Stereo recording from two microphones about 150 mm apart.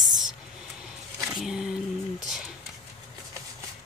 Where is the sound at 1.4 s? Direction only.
Centre (ahead or behind).